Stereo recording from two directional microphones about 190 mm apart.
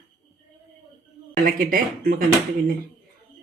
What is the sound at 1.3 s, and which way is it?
Speech, 50° right (ahead or behind).